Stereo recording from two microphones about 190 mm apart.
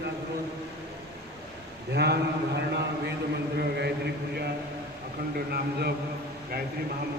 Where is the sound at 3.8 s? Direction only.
65° right (ahead or behind).